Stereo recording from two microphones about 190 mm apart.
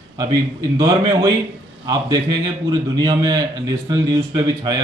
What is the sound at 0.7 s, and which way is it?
A man's voice, 20° right (ahead or behind).